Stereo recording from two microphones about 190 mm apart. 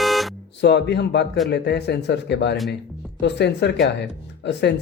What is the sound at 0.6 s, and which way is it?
Speech, 60° left (ahead or behind).